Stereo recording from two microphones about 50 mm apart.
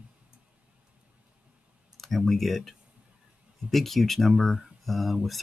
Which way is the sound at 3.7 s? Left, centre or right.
Centre.